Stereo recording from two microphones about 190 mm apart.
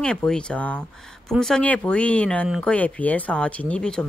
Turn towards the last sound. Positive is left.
turn(degrees=5)  # may be behind; listen again after turning